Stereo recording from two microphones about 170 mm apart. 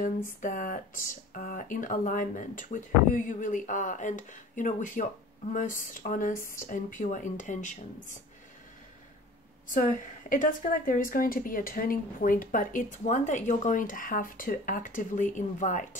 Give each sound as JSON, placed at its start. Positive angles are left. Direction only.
{"t": 0.0, "sound": "a woman's voice", "side_deg": 50}
{"t": 9.7, "sound": "a woman's voice", "side_deg": 50}